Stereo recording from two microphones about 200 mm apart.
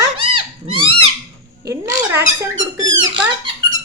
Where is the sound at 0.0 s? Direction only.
90° right.